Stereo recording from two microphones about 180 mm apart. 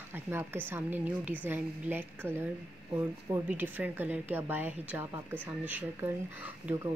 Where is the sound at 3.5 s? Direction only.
10° right (ahead or behind).